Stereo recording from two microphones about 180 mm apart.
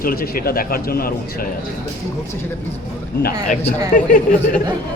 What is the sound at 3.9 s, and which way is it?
Speech, 50° left (ahead or behind).